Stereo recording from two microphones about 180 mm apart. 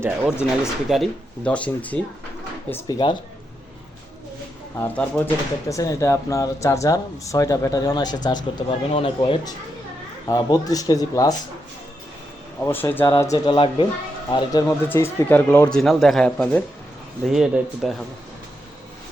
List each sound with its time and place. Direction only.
0.0 s speech: 5° right (ahead or behind)
2.8 s speech: 25° left (ahead or behind)
4.8 s speech: 10° left (ahead or behind)
12.5 s speech: 10° left (ahead or behind)
14.7 s speech: 10° left (ahead or behind); by 17.9 s 5° right (ahead or behind)